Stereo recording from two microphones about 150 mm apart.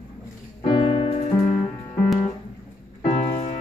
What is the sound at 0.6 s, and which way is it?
Music, 35° left (ahead or behind).